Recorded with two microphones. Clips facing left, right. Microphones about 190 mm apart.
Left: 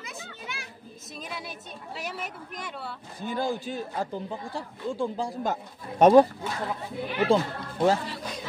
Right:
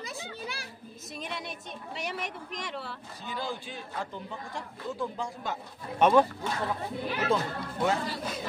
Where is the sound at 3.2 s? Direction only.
45° left (ahead or behind).